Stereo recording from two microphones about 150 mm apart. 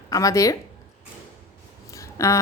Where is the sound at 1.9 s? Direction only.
20° left (ahead or behind).